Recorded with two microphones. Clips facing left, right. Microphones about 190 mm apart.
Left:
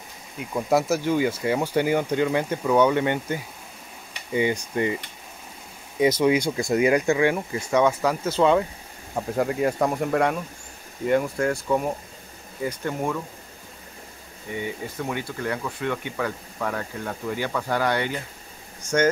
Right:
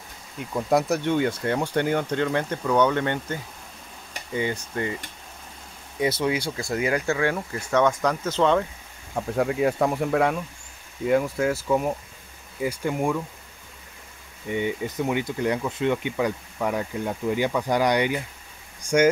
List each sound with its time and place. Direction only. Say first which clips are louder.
0.4 s speech: even; 5° left (ahead or behind)
6.2 s speech: left 5 dB; 20° left (ahead or behind)
9.1 s speech: even; centre (ahead or behind)
14.5 s speech: right 4 dB; 20° right (ahead or behind)
18.8 s vehicle: right 2 dB; 10° right (ahead or behind)